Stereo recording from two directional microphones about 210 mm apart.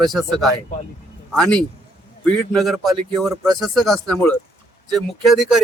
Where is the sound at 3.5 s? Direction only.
Centre (ahead or behind).